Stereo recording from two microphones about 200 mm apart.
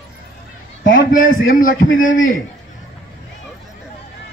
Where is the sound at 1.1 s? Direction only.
40° left (ahead or behind).